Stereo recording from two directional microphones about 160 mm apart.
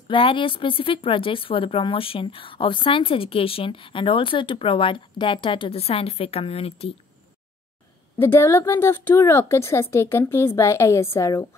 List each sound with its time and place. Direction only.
0.1 s speech: 30° left (ahead or behind)
8.2 s a woman's voice: 15° left (ahead or behind)